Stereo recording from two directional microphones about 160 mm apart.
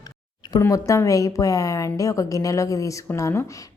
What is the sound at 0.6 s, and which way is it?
A woman's voice, 20° left (ahead or behind).